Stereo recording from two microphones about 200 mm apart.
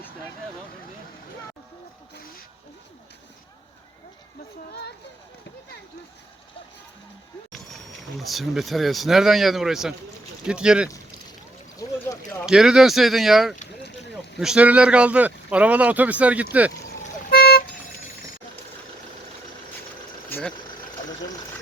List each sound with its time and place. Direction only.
2.1 s speech: 45° left (ahead or behind)
4.7 s speech: 55° left (ahead or behind)
8.2 s speech: centre (ahead or behind)
10.8 s a sound: 15° left (ahead or behind)
12.5 s speech: 5° right (ahead or behind)
17.2 s vehicle: 50° left (ahead or behind)
20.3 s vehicle: 10° left (ahead or behind)